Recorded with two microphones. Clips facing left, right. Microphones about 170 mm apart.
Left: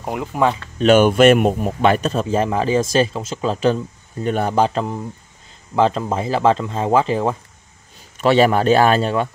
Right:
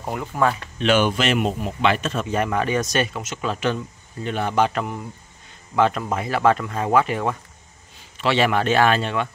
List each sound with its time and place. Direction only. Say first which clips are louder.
0.0 s speech: left 3 dB; 20° left (ahead or behind)
0.7 s speech: left 9 dB; 45° left (ahead or behind); by 7.3 s 30° left (ahead or behind)
8.2 s speech: left 6 dB; 40° left (ahead or behind)